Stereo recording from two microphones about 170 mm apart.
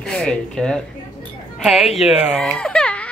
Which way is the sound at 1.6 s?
Centre (ahead or behind).